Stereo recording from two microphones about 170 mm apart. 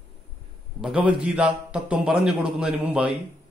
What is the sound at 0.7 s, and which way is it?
A man's voice, 5° right (ahead or behind).